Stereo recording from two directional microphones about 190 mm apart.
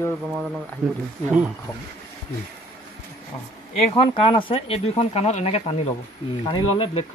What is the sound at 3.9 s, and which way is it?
Speech, 30° left (ahead or behind).